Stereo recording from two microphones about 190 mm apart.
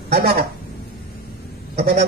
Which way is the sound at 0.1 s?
50° right (ahead or behind).